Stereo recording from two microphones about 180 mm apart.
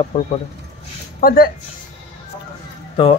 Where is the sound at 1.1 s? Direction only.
55° left (ahead or behind).